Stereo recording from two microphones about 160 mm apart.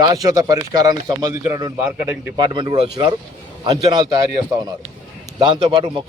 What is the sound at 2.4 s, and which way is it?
A man's voice, 30° right (ahead or behind).